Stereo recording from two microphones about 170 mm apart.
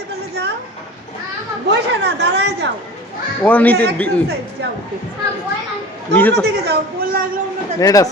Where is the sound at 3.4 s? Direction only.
10° left (ahead or behind).